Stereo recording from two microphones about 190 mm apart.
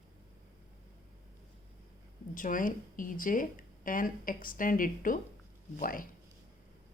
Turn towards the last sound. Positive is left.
turn(degrees=50)  # may be behind; listen again after turning